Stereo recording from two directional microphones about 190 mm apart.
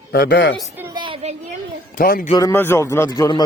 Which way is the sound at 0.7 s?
10° right (ahead or behind).